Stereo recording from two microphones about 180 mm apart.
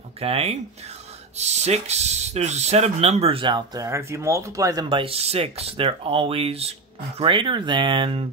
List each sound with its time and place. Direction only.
0.2 s speech: 35° right (ahead or behind)